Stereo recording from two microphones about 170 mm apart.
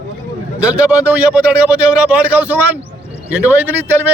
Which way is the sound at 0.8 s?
10° right (ahead or behind).